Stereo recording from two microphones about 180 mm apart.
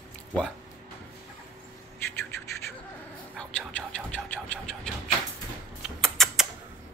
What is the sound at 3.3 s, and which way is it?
Vehicle, 5° left (ahead or behind).